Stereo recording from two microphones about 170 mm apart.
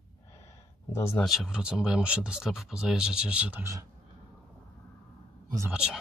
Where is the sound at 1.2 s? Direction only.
Centre (ahead or behind).